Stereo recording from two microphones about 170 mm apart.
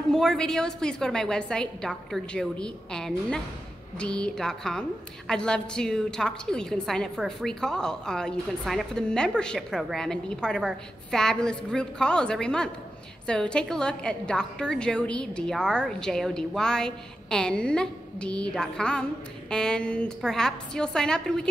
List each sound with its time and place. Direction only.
0.1 s a woman's voice: 5° left (ahead or behind)